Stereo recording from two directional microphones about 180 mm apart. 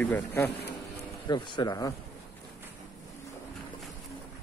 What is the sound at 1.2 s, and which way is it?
Speech, 25° left (ahead or behind).